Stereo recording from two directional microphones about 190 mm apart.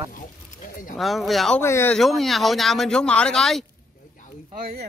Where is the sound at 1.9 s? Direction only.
Centre (ahead or behind).